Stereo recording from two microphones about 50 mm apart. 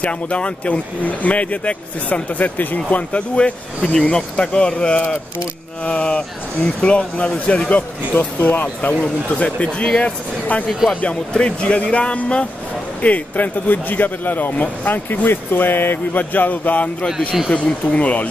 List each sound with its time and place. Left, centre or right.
0.0 s speech: left
7.7 s speech: left
17.0 s a man's voice: centre